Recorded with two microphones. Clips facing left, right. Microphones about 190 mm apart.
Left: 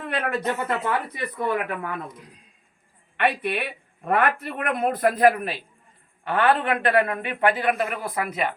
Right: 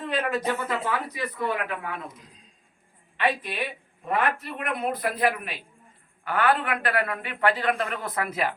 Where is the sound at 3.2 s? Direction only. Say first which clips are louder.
Left 3 dB; 65° left (ahead or behind); by 8.5 s 5° right (ahead or behind).